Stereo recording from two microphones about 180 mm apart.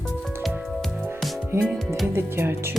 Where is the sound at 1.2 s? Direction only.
Centre (ahead or behind).